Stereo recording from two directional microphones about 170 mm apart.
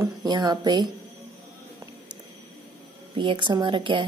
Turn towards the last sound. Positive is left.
turn(degrees=-30)  # may be behind; listen again after turning